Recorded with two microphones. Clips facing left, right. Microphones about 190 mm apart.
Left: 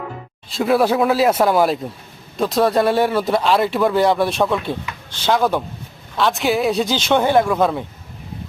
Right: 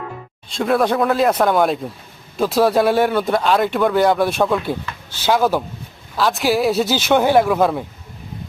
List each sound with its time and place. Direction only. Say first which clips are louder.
0.5 s speech: left 1 dB; 5° left (ahead or behind)